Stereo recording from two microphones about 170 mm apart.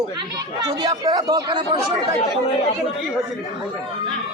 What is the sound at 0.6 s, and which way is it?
Speech, 25° right (ahead or behind).